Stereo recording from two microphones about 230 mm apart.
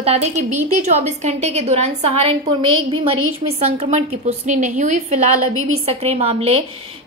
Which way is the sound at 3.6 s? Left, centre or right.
Right.